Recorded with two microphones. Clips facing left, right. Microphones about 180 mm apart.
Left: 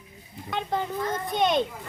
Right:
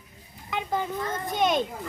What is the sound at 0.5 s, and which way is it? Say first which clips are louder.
A child's voice: even; 5° right (ahead or behind).